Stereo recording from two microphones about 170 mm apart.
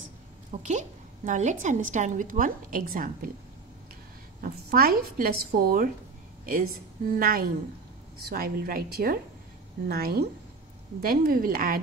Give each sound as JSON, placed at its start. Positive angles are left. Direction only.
{"t": 0.5, "sound": "a woman's voice", "side_deg": -45}
{"t": 4.4, "sound": "speech", "side_deg": -60}